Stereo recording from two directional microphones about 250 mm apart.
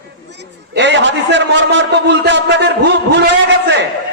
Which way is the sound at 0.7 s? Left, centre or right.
Right.